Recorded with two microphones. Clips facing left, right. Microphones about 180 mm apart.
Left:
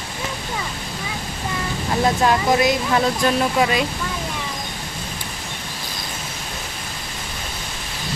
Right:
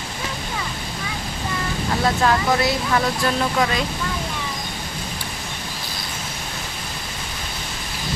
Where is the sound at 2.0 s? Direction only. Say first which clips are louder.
Left 2 dB; 15° left (ahead or behind).